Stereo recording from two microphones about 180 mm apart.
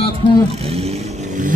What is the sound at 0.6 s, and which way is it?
Vehicle, 35° right (ahead or behind).